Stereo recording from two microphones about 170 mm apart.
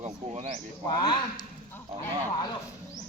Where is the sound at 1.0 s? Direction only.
25° left (ahead or behind).